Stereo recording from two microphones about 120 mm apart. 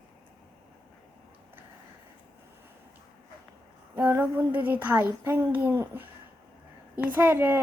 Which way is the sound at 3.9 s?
15° right (ahead or behind).